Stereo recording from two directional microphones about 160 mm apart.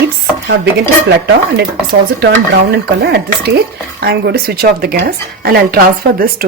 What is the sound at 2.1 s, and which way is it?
Speech, 85° right.